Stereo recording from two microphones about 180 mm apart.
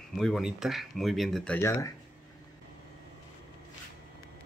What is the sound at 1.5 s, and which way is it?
Speech, 15° left (ahead or behind).